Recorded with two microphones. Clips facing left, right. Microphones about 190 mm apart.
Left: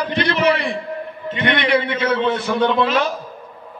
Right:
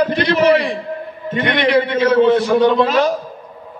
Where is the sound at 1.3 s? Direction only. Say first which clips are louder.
Right 2 dB; 45° right (ahead or behind).